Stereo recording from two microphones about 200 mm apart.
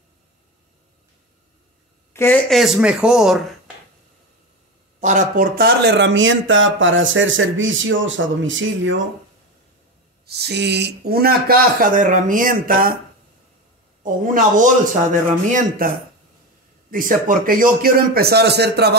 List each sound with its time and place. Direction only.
2.1 s speech: 15° left (ahead or behind)
2.5 s speech: centre (ahead or behind)
5.0 s speech: 40° right (ahead or behind); by 9.0 s 70° right (ahead or behind)
10.2 s speech: 55° right (ahead or behind)
14.0 s speech: 40° right (ahead or behind)
15.8 s speech: 45° right (ahead or behind)